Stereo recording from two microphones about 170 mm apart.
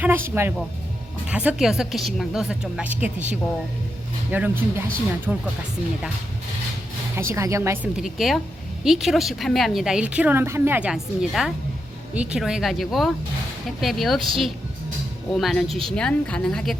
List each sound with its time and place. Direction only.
0.0 s a woman's voice: 15° right (ahead or behind)
7.2 s speech: 15° right (ahead or behind)
7.9 s a woman's voice: centre (ahead or behind)
15.3 s a woman's voice: centre (ahead or behind)